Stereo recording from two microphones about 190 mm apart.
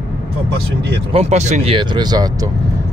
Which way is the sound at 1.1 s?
35° right (ahead or behind).